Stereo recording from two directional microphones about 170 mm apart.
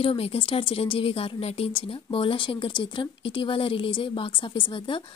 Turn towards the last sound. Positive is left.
turn(degrees=30)  # may be behind; listen again after turning